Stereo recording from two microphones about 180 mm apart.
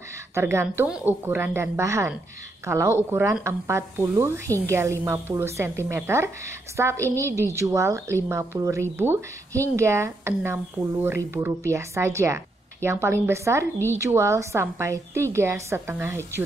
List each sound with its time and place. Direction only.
0.3 s a woman's voice: 15° right (ahead or behind)